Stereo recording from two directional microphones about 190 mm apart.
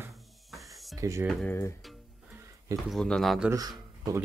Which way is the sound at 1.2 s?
10° left (ahead or behind).